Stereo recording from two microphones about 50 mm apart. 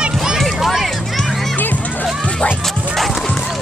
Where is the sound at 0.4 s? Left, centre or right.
Centre.